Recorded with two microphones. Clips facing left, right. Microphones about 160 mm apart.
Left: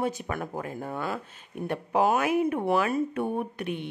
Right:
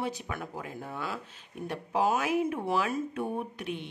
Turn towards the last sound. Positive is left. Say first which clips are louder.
# left 4 dB
turn(degrees=55)  # may be behind; listen again after turning